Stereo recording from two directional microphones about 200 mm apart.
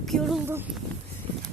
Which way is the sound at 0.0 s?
Centre (ahead or behind).